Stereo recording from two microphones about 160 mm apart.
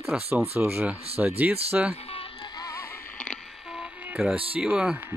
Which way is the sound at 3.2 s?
5° left (ahead or behind).